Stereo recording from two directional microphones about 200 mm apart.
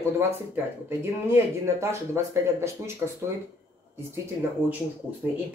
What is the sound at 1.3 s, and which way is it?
Speech, 15° right (ahead or behind).